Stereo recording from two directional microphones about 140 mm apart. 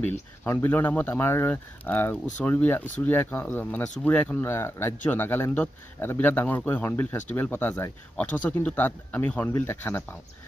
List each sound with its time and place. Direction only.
0.4 s speech: 15° left (ahead or behind)